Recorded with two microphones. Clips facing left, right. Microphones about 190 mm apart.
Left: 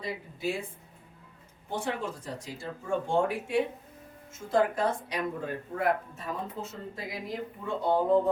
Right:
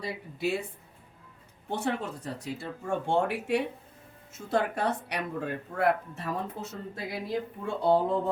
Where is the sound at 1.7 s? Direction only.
65° right (ahead or behind).